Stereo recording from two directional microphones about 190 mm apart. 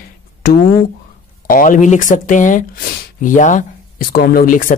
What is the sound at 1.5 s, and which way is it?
Speech, 45° left (ahead or behind).